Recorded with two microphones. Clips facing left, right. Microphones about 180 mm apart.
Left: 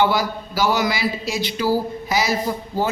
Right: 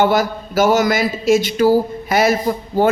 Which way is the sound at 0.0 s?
50° right (ahead or behind).